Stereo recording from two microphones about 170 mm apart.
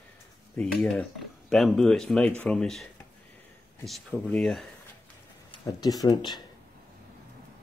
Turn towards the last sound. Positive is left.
turn(degrees=25)  # may be behind; listen again after turning